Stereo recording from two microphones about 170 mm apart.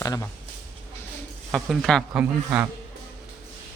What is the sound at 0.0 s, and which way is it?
Speech, 20° left (ahead or behind).